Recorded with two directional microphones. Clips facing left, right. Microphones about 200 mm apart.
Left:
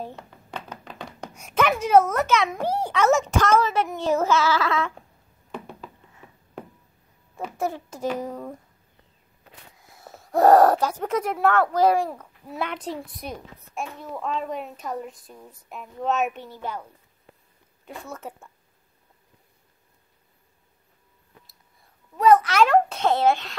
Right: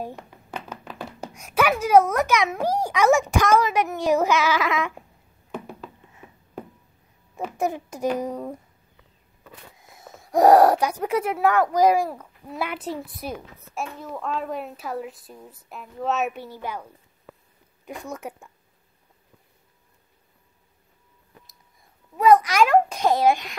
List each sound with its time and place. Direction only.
0.0 s a sound: 10° right (ahead or behind)
0.8 s a child's voice: 5° right (ahead or behind)
5.5 s a sound: centre (ahead or behind)
7.5 s a child's voice: 15° right (ahead or behind)
9.8 s a child's voice: 20° right (ahead or behind)
17.8 s a child's voice: 15° right (ahead or behind)
22.1 s a child's voice: 10° right (ahead or behind)